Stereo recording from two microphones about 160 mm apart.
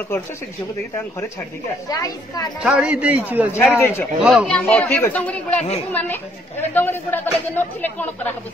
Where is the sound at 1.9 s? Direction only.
25° left (ahead or behind).